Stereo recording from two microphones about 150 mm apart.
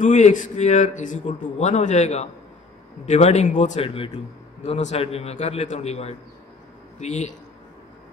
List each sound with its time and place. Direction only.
0.0 s a man's voice: 55° left (ahead or behind)